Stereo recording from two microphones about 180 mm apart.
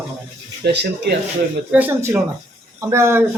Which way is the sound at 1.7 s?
10° right (ahead or behind).